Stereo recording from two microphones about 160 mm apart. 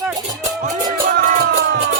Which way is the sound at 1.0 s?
60° right (ahead or behind).